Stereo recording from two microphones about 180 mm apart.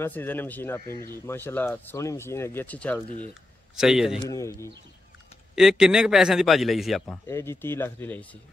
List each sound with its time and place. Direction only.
0.0 s speech: 10° left (ahead or behind)
3.7 s a man's voice: centre (ahead or behind)
4.3 s speech: 20° left (ahead or behind)
5.6 s a man's voice: centre (ahead or behind)
7.2 s speech: 15° left (ahead or behind)